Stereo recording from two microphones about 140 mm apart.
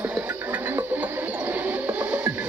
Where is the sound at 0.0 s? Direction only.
10° right (ahead or behind).